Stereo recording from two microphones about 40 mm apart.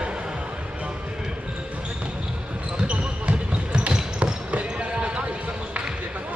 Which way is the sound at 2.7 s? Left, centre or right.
Right.